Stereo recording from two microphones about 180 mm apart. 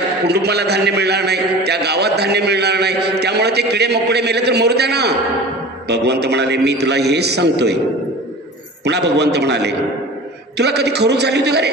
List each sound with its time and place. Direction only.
0.3 s a man's voice: 65° right (ahead or behind)
8.8 s a man's voice: 70° right (ahead or behind)